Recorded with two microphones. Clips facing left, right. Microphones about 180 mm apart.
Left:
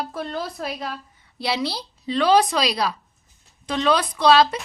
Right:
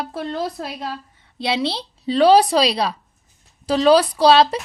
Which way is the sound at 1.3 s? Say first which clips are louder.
Right 3 dB; 20° right (ahead or behind).